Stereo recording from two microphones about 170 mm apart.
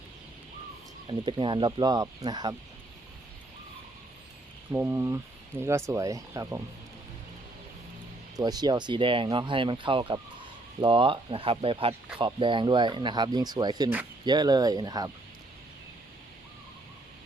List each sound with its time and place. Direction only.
1.0 s speech: 30° right (ahead or behind)
4.7 s speech: 10° right (ahead or behind)
8.4 s speech: 25° right (ahead or behind)